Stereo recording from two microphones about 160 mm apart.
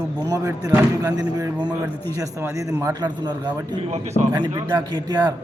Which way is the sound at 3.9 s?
45° right (ahead or behind).